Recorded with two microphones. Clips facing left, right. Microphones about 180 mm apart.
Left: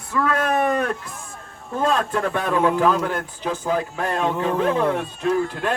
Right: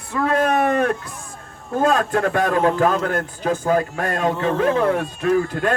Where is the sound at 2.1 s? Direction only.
55° right (ahead or behind).